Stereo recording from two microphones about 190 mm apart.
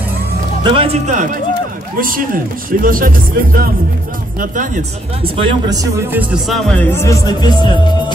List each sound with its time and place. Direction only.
0.7 s speech: 30° right (ahead or behind)
5.3 s speech: 25° right (ahead or behind); by 7.9 s 25° left (ahead or behind)